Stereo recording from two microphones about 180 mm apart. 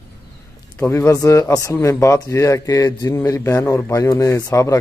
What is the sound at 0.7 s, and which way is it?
Speech, 15° left (ahead or behind).